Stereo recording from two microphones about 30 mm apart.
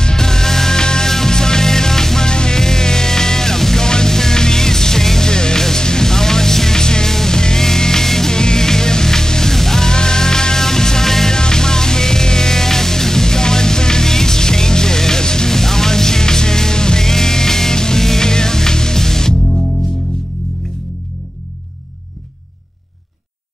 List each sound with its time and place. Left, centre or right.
0.0 s music: centre
5.3 s music: left